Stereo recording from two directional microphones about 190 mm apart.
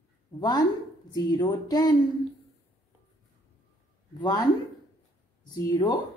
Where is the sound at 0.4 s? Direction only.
20° left (ahead or behind).